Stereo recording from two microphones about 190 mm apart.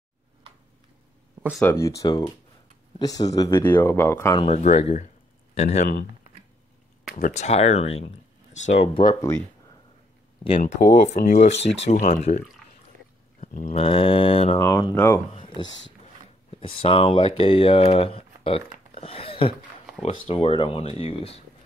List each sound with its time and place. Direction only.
1.6 s speech: 15° left (ahead or behind)
4.4 s a man's voice: 35° left (ahead or behind)
7.2 s speech: 40° left (ahead or behind); by 9.4 s 20° left (ahead or behind)
11.0 s speech: 35° left (ahead or behind)
13.4 s a sound: 40° left (ahead or behind)
13.7 s speech: 30° left (ahead or behind)
14.6 s speech: 15° left (ahead or behind)
15.3 s a sound: 25° left (ahead or behind)
16.4 s speech: 30° left (ahead or behind)